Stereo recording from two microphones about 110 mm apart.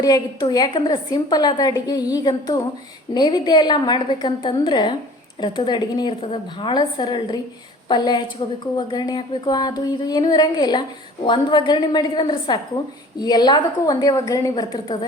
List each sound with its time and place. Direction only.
0.0 s a woman's voice: 40° left (ahead or behind)